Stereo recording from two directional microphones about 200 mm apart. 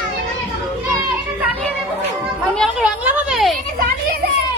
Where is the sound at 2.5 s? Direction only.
5° right (ahead or behind).